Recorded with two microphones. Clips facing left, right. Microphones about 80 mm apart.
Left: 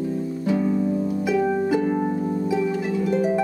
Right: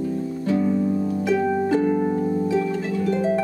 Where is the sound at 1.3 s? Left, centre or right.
Centre.